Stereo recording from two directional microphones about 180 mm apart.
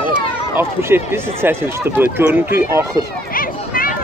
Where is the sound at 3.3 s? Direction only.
50° left (ahead or behind).